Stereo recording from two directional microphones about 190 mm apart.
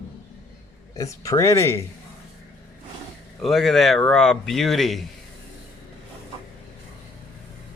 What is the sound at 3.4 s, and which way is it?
Speech, centre (ahead or behind).